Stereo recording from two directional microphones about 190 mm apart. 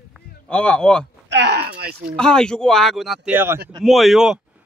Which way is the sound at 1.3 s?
65° right (ahead or behind).